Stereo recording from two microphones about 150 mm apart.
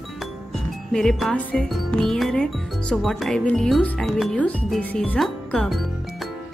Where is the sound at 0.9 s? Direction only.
Centre (ahead or behind).